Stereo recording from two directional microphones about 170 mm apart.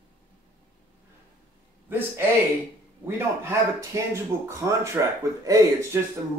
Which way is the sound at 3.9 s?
20° right (ahead or behind).